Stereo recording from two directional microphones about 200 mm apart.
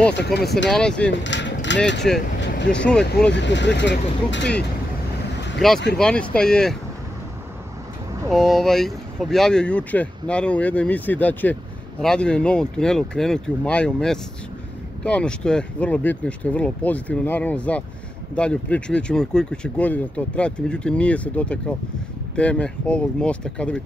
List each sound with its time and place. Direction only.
0.1 s speech: 55° left (ahead or behind)
0.7 s speech: 5° left (ahead or behind)
1.2 s a sound: 65° left (ahead or behind)
2.1 s speech: centre (ahead or behind)
3.3 s speech: 60° left (ahead or behind)
5.6 s speech: centre (ahead or behind)
8.3 s speech: centre (ahead or behind)